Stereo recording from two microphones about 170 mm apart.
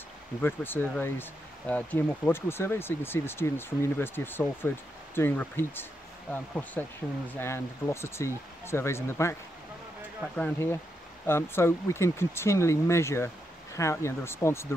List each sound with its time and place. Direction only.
0.4 s speech: 10° left (ahead or behind)